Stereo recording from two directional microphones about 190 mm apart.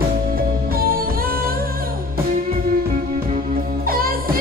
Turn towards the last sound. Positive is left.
turn(degrees=-50)  # may be behind; listen again after turning